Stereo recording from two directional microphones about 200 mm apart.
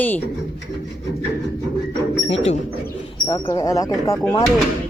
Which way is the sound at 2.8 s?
15° left (ahead or behind).